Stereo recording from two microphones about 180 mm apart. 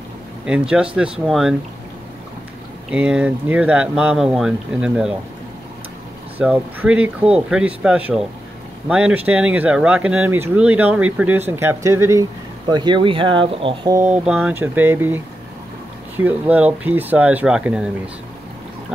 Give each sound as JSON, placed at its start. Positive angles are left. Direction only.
{"t": 0.5, "sound": "speech", "side_deg": -5}
{"t": 2.9, "sound": "speech", "side_deg": -5}
{"t": 6.3, "sound": "speech", "side_deg": -10}
{"t": 13.9, "sound": "speech", "side_deg": -10}